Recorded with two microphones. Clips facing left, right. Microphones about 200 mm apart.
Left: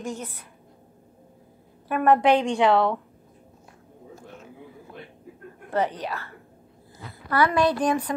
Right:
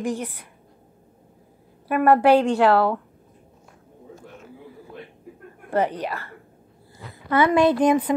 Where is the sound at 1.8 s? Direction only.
10° right (ahead or behind).